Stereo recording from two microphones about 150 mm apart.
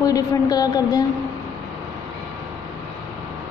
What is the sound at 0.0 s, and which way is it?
A woman's voice, 25° left (ahead or behind).